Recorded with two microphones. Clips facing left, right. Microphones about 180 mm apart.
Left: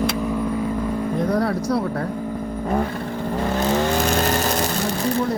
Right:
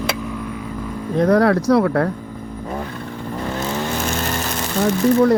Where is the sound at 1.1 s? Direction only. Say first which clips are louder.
Right 9 dB; 90° right.